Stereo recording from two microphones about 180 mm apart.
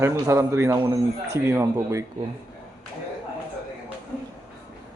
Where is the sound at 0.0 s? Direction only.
15° right (ahead or behind).